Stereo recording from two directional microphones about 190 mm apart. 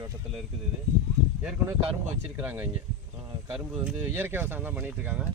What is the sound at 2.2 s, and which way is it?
Speech, 10° right (ahead or behind).